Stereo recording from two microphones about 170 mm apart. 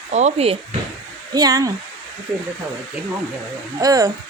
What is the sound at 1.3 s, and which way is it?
Speech, 20° right (ahead or behind).